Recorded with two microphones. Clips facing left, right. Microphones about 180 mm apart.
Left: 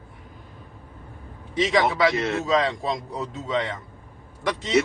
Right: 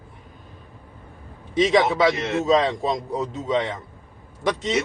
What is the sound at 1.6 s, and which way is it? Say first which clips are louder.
A man's voice: right 3 dB; 25° right (ahead or behind).